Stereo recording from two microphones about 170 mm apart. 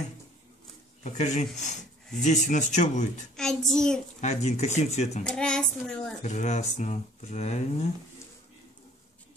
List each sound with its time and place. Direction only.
1.0 s speech: 40° left (ahead or behind)
3.3 s speech: 5° left (ahead or behind)
4.2 s speech: 40° left (ahead or behind)
5.2 s speech: 5° left (ahead or behind)
6.2 s speech: 45° left (ahead or behind)